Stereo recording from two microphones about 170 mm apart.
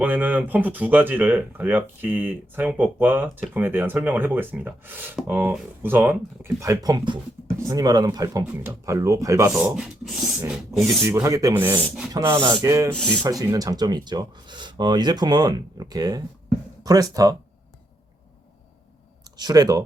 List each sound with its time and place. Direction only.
0.0 s speech: 10° right (ahead or behind)
9.7 s speech: 5° right (ahead or behind)
11.0 s speech: 20° right (ahead or behind)
19.4 s speech: 25° right (ahead or behind)